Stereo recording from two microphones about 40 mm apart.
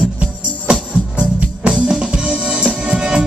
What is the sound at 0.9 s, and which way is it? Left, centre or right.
Music, right.